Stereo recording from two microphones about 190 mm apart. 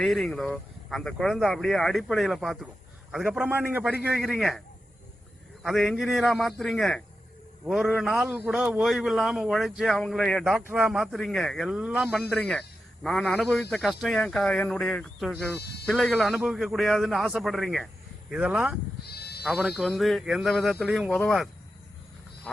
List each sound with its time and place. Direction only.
0.0 s a man's voice: centre (ahead or behind)
5.6 s a man's voice: centre (ahead or behind)
19.0 s sheep: 60° left (ahead or behind)
19.4 s a man's voice: centre (ahead or behind)